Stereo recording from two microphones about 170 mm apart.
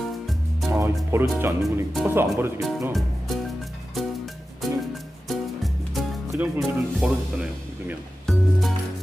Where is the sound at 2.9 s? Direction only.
Centre (ahead or behind).